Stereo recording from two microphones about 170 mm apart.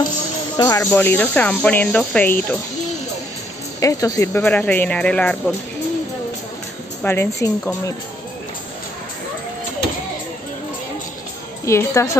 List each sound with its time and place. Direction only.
0.6 s speech: 20° left (ahead or behind)
3.8 s speech: 20° left (ahead or behind)
7.0 s speech: 15° left (ahead or behind)
11.6 s speech: 15° left (ahead or behind)